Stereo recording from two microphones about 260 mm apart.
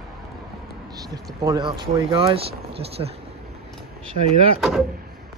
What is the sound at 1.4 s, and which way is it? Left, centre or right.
Speech, centre.